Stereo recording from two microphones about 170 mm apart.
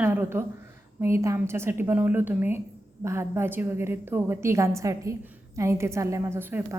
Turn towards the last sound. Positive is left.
turn(degrees=-10)  # may be behind; listen again after turning